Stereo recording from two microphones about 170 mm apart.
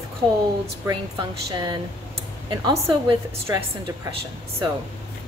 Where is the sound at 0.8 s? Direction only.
25° right (ahead or behind).